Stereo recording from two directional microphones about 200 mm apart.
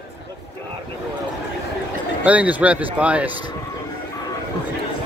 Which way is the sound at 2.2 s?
5° right (ahead or behind).